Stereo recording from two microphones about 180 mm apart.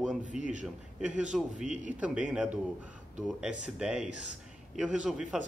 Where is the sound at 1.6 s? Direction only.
45° right (ahead or behind).